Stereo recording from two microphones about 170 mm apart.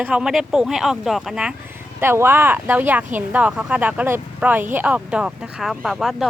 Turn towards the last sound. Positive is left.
turn(degrees=0)  # may be behind; listen again after turning